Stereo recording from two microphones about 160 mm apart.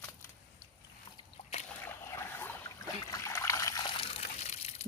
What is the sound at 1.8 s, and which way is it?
Boat, 15° left (ahead or behind).